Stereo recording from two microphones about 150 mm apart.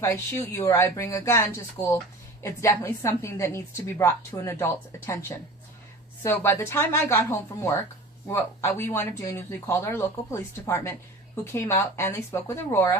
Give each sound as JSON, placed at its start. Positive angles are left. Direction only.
{"t": 0.0, "sound": "a woman's voice", "side_deg": 20}
{"t": 6.2, "sound": "speech", "side_deg": 15}